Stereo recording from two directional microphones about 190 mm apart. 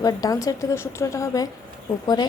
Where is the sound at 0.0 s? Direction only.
20° left (ahead or behind).